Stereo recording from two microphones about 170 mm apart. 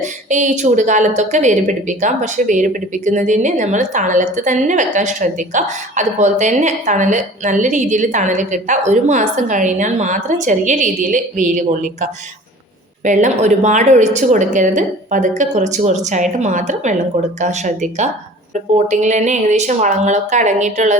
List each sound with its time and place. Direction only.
0.0 s a woman's voice: 45° right (ahead or behind)
13.1 s a woman's voice: 45° right (ahead or behind)
18.9 s a woman's voice: 45° right (ahead or behind)